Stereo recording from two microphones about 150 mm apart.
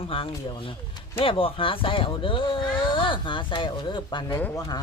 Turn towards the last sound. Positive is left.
turn(degrees=15)  # may be behind; listen again after turning